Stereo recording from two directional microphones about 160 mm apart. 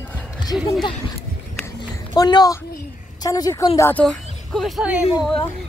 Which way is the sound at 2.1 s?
25° left (ahead or behind).